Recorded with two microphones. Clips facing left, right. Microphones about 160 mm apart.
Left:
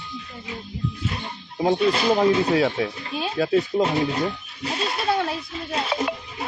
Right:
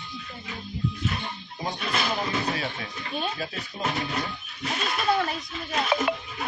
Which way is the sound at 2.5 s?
85° left.